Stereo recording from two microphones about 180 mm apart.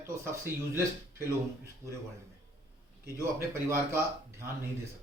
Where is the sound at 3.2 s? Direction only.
15° right (ahead or behind).